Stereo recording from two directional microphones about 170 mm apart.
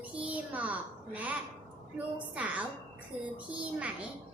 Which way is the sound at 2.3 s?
10° right (ahead or behind).